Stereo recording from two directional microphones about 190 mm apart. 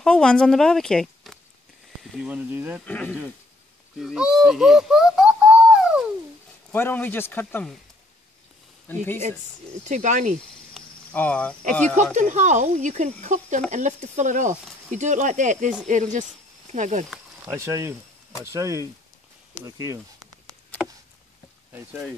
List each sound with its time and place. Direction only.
0.0 s speech: 5° left (ahead or behind)
2.8 s a man's voice: 10° left (ahead or behind)
4.0 s a sound: 5° right (ahead or behind)
6.7 s a man's voice: 10° left (ahead or behind)
9.8 s speech: 40° right (ahead or behind)
10.7 s cricket: 10° left (ahead or behind)
12.0 s speech: 40° right (ahead or behind)
17.5 s speech: 15° right (ahead or behind)